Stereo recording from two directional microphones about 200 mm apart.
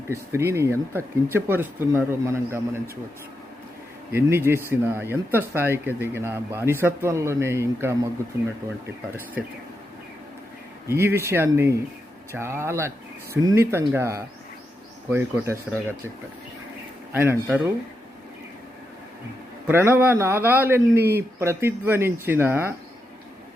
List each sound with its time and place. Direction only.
0.1 s speech: 15° right (ahead or behind)
4.1 s speech: 10° right (ahead or behind)
10.8 s speech: 10° right (ahead or behind)
15.7 s speech: 5° right (ahead or behind)
17.1 s speech: 10° right (ahead or behind)
19.6 s speech: 10° right (ahead or behind)